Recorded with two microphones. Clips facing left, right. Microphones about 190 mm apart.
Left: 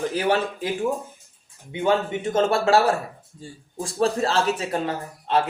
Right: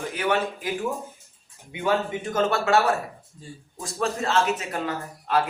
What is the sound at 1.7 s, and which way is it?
Speech, 25° left (ahead or behind).